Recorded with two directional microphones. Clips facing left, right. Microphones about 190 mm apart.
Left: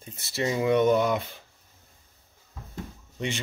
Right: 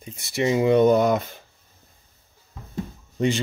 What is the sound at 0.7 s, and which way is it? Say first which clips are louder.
Speech: right 4 dB; 35° right (ahead or behind).